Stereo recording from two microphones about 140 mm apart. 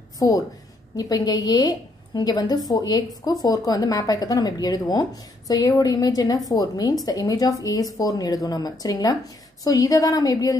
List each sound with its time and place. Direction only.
0.2 s a woman's voice: 25° left (ahead or behind)